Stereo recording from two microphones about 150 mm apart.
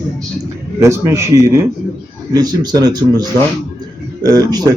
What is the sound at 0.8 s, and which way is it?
A man's voice, 20° right (ahead or behind).